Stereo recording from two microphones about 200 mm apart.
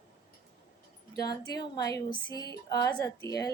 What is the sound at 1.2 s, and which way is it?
Speech, 20° left (ahead or behind).